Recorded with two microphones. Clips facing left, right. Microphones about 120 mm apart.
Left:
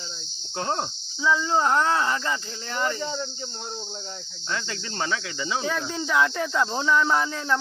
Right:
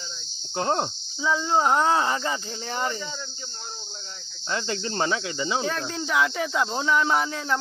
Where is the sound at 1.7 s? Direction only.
20° right (ahead or behind).